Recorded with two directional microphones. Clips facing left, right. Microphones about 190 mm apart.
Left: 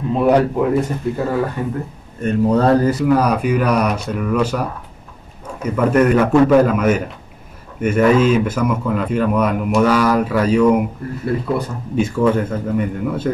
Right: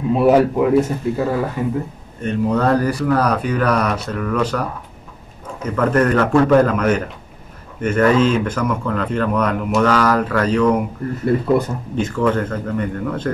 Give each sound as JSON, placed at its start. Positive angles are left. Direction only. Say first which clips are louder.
{"t": 0.1, "sound": "speech", "louder": "right 1 dB", "side_deg": -5}
{"t": 2.2, "sound": "speech", "louder": "left 3 dB", "side_deg": 30}
{"t": 3.1, "sound": "speech", "louder": "left 1 dB", "side_deg": 10}
{"t": 12.0, "sound": "speech", "louder": "left 2 dB", "side_deg": 10}